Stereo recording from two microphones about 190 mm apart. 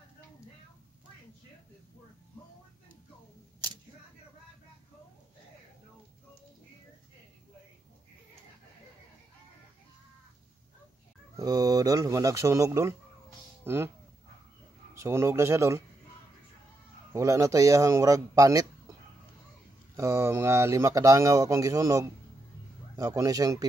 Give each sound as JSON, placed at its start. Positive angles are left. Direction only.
{"t": 11.3, "sound": "speech", "side_deg": -20}
{"t": 15.0, "sound": "speech", "side_deg": -15}
{"t": 17.1, "sound": "speech", "side_deg": -15}
{"t": 20.0, "sound": "speech", "side_deg": -15}